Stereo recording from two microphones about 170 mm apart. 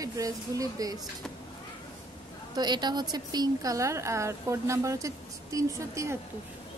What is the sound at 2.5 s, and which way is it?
A woman's voice, 25° right (ahead or behind).